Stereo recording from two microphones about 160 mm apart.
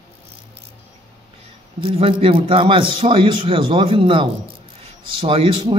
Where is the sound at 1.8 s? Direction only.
35° right (ahead or behind).